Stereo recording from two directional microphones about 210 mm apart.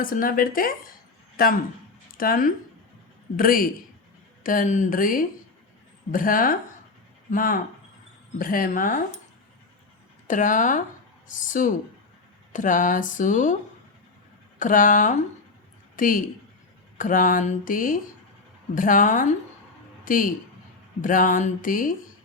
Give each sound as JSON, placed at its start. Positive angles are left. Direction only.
{"t": 0.0, "sound": "speech", "side_deg": 40}
{"t": 10.2, "sound": "speech", "side_deg": 40}
{"t": 14.6, "sound": "a woman's voice", "side_deg": 40}